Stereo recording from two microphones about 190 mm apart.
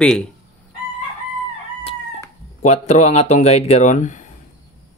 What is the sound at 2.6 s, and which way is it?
Speech, 35° left (ahead or behind).